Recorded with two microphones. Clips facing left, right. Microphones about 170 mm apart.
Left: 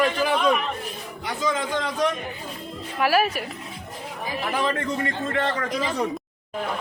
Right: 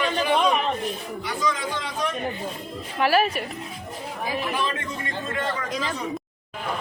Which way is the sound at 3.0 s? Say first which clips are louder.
Even; 5° left (ahead or behind).